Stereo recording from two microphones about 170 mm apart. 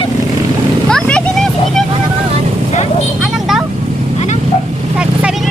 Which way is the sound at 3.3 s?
Centre (ahead or behind).